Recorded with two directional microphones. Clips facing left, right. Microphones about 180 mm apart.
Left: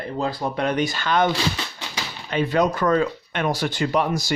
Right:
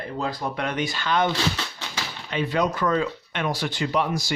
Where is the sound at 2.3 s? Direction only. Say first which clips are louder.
Left 4 dB; 45° left (ahead or behind).